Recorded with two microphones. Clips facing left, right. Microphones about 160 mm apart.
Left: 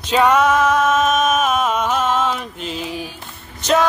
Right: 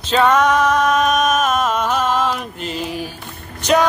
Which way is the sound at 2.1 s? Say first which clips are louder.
Right 1 dB; centre (ahead or behind).